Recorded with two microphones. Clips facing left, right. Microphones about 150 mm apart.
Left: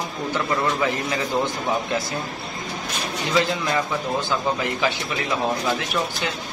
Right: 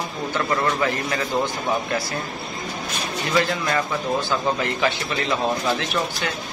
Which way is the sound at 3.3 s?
10° left (ahead or behind).